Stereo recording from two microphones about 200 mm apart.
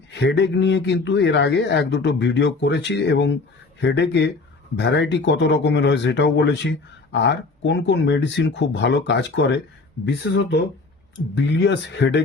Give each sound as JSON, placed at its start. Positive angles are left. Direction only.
{"t": 0.1, "sound": "speech", "side_deg": 60}